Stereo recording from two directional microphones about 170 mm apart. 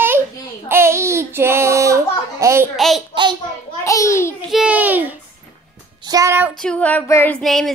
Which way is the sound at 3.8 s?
20° left (ahead or behind).